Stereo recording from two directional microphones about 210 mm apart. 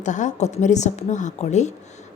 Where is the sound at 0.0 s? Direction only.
35° left (ahead or behind).